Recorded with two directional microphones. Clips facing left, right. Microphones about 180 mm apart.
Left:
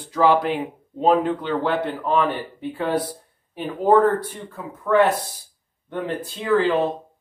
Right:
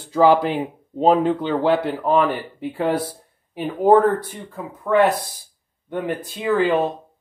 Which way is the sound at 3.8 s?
20° right (ahead or behind).